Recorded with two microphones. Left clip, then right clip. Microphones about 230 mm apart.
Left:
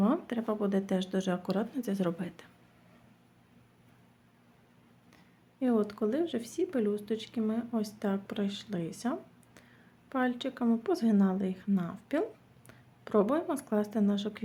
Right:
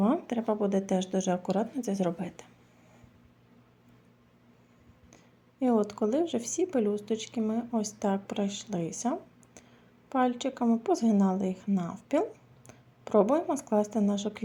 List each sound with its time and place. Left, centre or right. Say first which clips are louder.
0.0 s speech: right 3 dB; centre
5.1 s speech: right 4 dB; centre